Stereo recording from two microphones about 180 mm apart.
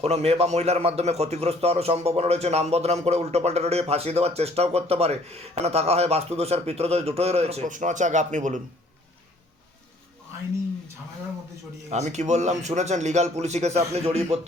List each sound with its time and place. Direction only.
0.0 s a man's voice: 35° right (ahead or behind)
11.9 s a man's voice: 40° right (ahead or behind)